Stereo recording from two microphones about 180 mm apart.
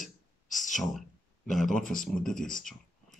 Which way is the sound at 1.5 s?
Centre (ahead or behind).